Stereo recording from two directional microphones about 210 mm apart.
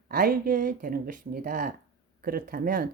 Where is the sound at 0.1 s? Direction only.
45° right (ahead or behind).